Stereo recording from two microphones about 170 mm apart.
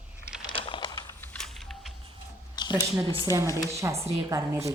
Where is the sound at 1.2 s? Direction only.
5° left (ahead or behind).